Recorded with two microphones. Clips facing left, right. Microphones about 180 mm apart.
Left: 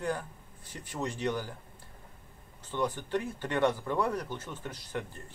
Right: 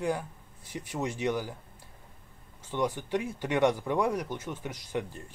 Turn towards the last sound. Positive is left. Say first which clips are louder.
# right 4 dB
turn(degrees=-15)  # may be behind; listen again after turning